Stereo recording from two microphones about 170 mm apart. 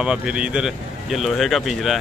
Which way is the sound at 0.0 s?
5° right (ahead or behind).